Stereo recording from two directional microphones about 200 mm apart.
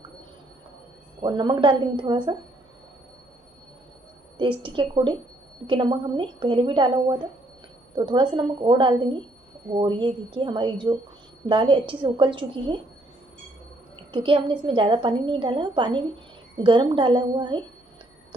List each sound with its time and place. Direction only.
1.2 s a woman's voice: 20° right (ahead or behind)
4.4 s a woman's voice: 25° right (ahead or behind)
14.1 s a woman's voice: 25° right (ahead or behind)